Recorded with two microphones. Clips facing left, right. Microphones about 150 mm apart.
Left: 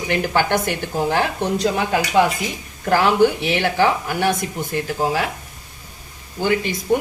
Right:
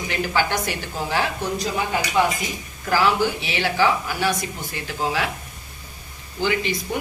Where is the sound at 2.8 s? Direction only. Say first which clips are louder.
Left 5 dB; 55° left (ahead or behind).